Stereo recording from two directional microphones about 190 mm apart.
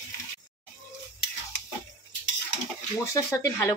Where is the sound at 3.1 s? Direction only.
15° left (ahead or behind).